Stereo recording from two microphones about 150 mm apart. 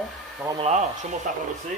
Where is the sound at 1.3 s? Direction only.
60° right (ahead or behind).